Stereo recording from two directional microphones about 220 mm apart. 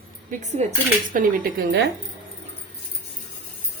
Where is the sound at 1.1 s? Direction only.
35° right (ahead or behind).